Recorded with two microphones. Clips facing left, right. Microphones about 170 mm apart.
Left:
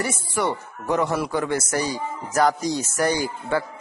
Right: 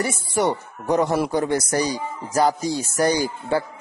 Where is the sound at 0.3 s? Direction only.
40° right (ahead or behind).